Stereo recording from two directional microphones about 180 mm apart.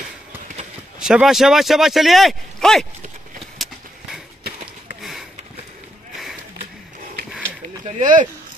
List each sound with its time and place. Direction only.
0.9 s speech: 5° right (ahead or behind)
8.0 s speech: 45° right (ahead or behind)